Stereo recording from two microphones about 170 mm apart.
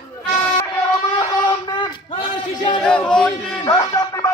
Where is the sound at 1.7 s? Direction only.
30° left (ahead or behind).